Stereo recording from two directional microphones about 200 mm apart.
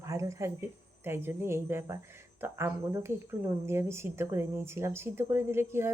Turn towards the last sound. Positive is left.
turn(degrees=-10)  # may be behind; listen again after turning